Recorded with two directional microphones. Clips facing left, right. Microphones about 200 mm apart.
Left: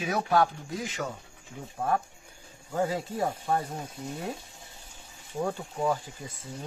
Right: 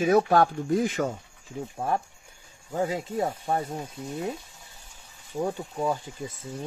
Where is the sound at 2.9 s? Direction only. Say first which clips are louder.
Right 2 dB; 25° right (ahead or behind).